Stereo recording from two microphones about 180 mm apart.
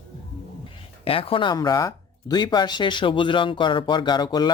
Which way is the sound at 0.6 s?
30° left (ahead or behind).